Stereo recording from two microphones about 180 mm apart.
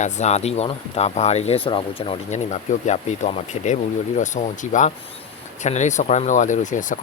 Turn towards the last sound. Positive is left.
turn(degrees=45)  # may be behind; listen again after turning